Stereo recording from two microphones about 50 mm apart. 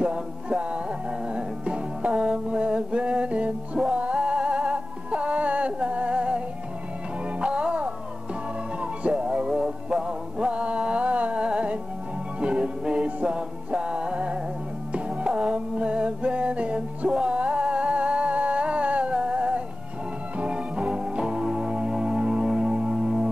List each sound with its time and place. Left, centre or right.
0.0 s music: right
9.0 s music: right